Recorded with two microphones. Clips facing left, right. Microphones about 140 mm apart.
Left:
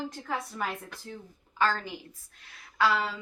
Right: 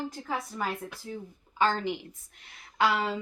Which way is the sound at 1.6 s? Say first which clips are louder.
Right 2 dB; 20° right (ahead or behind).